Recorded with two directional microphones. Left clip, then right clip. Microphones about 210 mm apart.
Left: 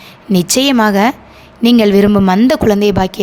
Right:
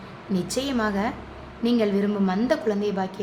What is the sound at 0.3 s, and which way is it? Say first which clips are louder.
A woman's voice: left 15 dB; 50° left (ahead or behind).